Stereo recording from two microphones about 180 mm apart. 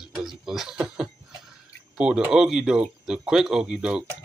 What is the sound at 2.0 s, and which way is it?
Speech, 5° right (ahead or behind).